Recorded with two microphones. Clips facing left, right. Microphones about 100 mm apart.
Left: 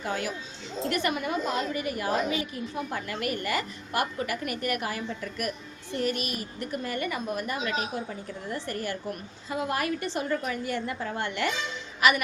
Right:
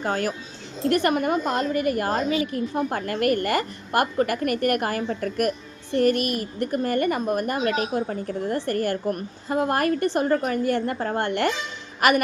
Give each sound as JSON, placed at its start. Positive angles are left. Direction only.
{"t": 0.0, "sound": "a woman's voice", "side_deg": -50}